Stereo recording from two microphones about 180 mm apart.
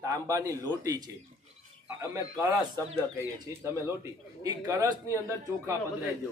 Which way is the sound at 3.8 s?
15° right (ahead or behind).